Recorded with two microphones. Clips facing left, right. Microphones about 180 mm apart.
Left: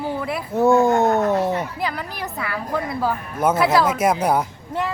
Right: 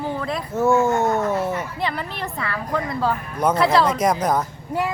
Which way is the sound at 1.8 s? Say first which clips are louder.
Even; centre (ahead or behind).